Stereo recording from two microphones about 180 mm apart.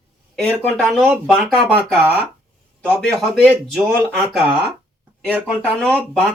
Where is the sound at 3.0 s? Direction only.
5° left (ahead or behind).